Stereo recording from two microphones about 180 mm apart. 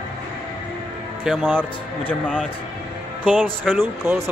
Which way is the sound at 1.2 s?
Centre (ahead or behind).